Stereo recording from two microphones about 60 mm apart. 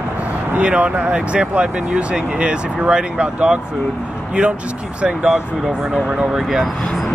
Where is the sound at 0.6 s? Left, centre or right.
Centre.